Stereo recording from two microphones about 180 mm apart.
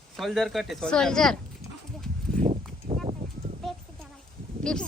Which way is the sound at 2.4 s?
35° right (ahead or behind).